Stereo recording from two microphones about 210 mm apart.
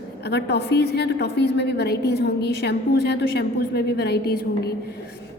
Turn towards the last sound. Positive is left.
turn(degrees=50)  # may be behind; listen again after turning